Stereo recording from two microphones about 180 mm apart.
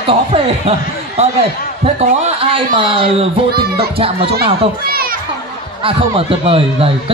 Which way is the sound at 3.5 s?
60° right (ahead or behind).